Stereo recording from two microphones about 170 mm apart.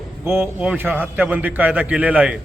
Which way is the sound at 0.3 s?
10° right (ahead or behind).